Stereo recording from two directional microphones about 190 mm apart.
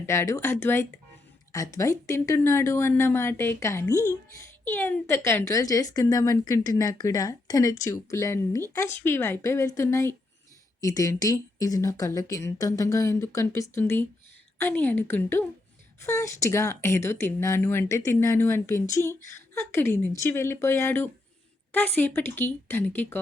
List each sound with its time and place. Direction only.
0.0 s speech: 15° left (ahead or behind)